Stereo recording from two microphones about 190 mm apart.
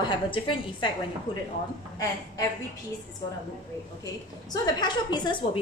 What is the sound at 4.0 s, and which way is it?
A woman's voice, 20° left (ahead or behind).